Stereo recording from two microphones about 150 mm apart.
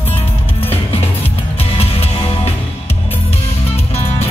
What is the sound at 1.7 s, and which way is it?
Music, 40° left (ahead or behind).